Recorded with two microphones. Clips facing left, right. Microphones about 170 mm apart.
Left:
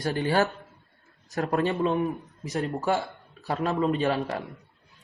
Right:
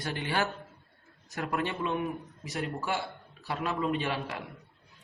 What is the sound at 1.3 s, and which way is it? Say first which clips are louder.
Speech: left 7 dB; 40° left (ahead or behind).